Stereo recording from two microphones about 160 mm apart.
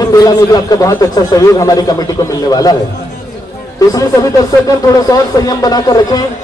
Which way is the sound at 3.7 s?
20° left (ahead or behind).